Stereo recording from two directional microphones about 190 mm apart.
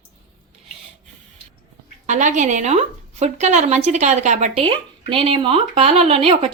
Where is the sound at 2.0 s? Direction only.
40° right (ahead or behind).